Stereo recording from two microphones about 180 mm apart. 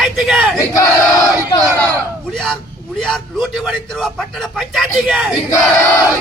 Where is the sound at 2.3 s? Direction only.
Centre (ahead or behind).